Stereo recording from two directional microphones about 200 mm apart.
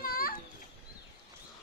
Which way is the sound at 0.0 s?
45° left (ahead or behind).